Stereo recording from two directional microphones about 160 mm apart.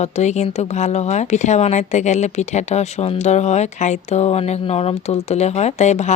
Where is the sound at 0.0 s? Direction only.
45° left (ahead or behind).